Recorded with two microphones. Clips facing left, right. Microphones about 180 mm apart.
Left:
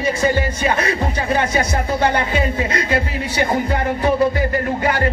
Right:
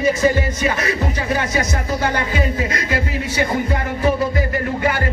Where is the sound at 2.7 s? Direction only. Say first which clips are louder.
Left 2 dB; 30° left (ahead or behind).